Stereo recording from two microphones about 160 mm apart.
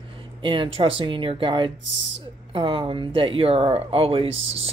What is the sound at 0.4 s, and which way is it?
Speech, 30° right (ahead or behind).